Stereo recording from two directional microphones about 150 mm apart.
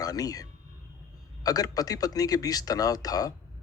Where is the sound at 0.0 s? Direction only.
25° left (ahead or behind).